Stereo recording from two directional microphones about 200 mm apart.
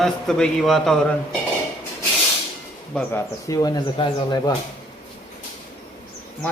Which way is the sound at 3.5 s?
20° left (ahead or behind).